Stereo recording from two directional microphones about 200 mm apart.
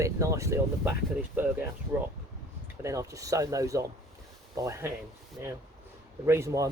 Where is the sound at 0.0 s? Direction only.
15° right (ahead or behind).